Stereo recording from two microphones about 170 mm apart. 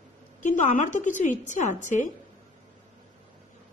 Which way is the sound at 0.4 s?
45° left (ahead or behind).